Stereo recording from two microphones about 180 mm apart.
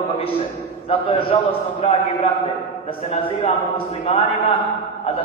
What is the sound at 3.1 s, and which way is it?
A man's voice, 30° left (ahead or behind).